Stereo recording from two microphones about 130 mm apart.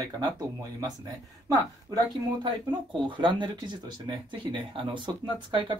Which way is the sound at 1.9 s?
30° right (ahead or behind).